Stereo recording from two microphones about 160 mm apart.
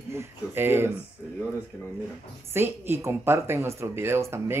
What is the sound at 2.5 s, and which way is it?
Speech, 15° right (ahead or behind).